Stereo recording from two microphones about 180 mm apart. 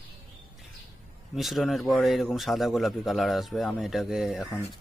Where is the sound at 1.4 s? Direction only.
Centre (ahead or behind).